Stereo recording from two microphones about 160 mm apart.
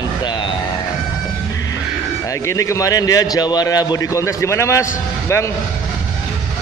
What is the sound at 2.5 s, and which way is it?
A man's voice, 20° left (ahead or behind).